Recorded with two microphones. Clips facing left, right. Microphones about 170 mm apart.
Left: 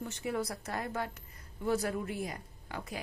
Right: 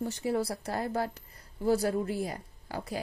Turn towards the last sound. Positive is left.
turn(degrees=-35)  # may be behind; listen again after turning